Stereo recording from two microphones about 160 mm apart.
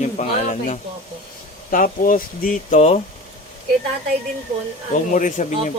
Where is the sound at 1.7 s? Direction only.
60° left (ahead or behind).